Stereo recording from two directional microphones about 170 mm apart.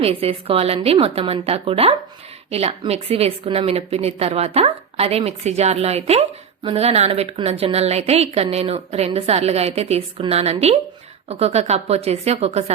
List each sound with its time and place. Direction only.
0.0 s a woman's voice: 35° right (ahead or behind)